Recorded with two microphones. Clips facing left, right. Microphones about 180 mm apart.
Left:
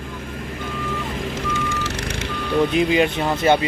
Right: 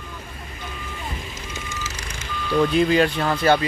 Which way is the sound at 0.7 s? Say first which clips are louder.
Left 6 dB; 75° left (ahead or behind).